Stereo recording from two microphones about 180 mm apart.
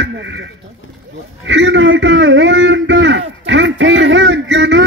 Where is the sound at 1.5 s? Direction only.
90° right.